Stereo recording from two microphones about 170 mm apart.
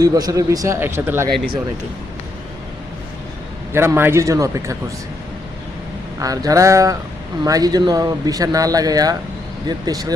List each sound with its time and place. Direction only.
0.0 s a man's voice: 20° right (ahead or behind)
3.7 s a man's voice: 15° right (ahead or behind)
6.1 s a man's voice: 20° right (ahead or behind)